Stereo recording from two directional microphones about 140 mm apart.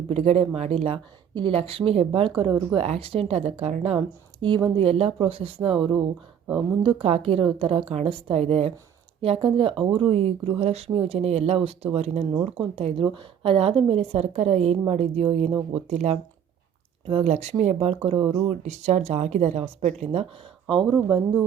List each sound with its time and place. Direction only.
0.1 s a woman's voice: 45° right (ahead or behind)
2.7 s a woman's voice: 45° right (ahead or behind)
20.7 s a woman's voice: 35° right (ahead or behind)